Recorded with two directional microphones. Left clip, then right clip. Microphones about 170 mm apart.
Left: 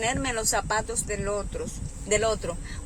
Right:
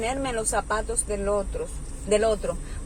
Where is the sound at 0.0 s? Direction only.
40° left (ahead or behind).